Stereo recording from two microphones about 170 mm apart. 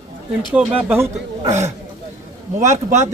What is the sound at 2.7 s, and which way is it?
Speech, 45° right (ahead or behind).